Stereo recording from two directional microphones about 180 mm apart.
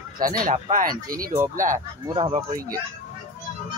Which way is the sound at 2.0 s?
25° right (ahead or behind).